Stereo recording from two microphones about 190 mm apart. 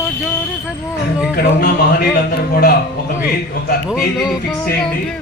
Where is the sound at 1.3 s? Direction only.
55° left (ahead or behind).